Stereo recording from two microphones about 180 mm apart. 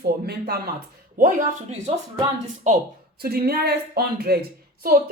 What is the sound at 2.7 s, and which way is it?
Speech, 45° right (ahead or behind).